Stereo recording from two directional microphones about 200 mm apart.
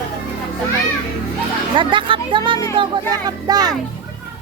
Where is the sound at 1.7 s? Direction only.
25° right (ahead or behind).